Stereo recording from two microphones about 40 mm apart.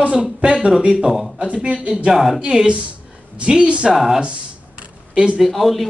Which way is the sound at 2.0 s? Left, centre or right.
Centre.